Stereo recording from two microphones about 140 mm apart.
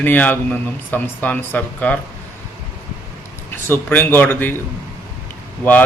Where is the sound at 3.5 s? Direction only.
15° left (ahead or behind).